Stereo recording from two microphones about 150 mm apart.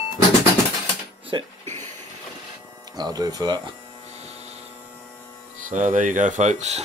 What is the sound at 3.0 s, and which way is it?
Speech, 25° right (ahead or behind).